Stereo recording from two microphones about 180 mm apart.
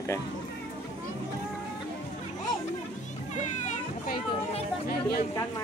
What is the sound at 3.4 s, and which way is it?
Children playing, 40° left (ahead or behind).